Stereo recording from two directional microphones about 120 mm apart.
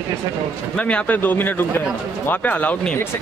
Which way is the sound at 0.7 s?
10° left (ahead or behind).